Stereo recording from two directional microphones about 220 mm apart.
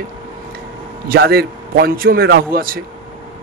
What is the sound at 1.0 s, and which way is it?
A man's voice, 45° right (ahead or behind).